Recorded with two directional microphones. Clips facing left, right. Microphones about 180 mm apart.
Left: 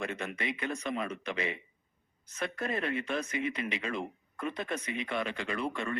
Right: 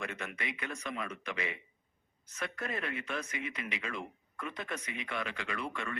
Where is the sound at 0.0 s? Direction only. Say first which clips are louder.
Left 4 dB; 30° left (ahead or behind).